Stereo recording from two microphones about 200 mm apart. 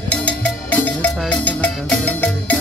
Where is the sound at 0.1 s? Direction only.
5° left (ahead or behind).